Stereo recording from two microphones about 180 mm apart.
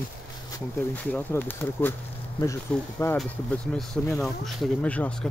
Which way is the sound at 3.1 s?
5° left (ahead or behind).